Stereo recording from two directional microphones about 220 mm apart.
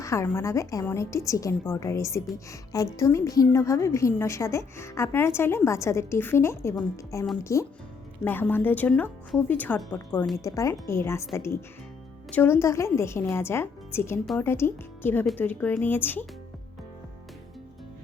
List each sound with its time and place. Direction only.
0.0 s a woman's voice: 15° left (ahead or behind)